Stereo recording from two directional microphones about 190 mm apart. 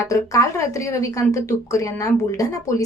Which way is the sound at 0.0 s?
15° left (ahead or behind).